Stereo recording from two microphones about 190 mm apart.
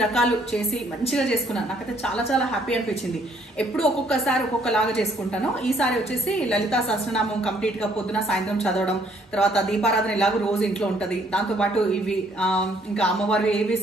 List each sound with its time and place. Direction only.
0.0 s speech: 5° left (ahead or behind)